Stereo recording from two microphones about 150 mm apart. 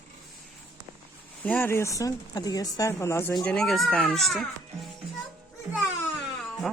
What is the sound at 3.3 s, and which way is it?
Speech, 5° left (ahead or behind).